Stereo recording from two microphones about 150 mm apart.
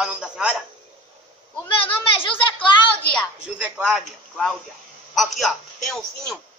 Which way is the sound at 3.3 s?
10° right (ahead or behind).